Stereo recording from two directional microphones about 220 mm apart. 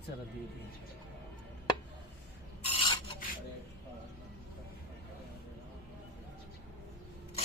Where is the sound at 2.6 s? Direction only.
20° left (ahead or behind).